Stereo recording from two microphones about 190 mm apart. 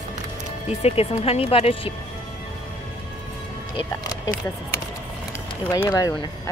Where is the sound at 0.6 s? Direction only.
30° left (ahead or behind).